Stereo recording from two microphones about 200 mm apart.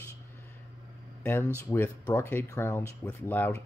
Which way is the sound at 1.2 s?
10° left (ahead or behind).